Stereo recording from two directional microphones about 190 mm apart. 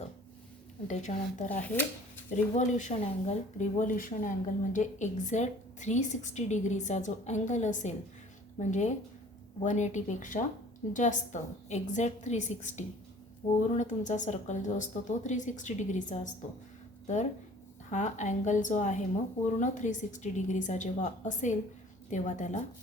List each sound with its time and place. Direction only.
0.9 s speech: 40° left (ahead or behind)
1.6 s speech: 10° left (ahead or behind)
2.3 s speech: 40° left (ahead or behind)
17.9 s speech: 40° left (ahead or behind)